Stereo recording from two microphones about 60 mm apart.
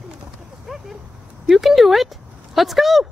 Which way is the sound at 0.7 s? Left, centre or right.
Centre.